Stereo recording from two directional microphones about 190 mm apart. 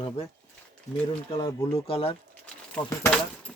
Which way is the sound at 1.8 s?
30° left (ahead or behind).